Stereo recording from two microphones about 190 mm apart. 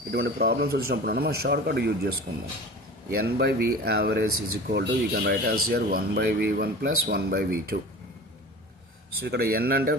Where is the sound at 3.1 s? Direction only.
55° right (ahead or behind).